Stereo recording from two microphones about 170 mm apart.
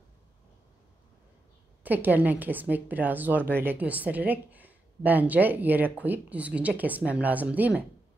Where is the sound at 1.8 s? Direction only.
10° right (ahead or behind).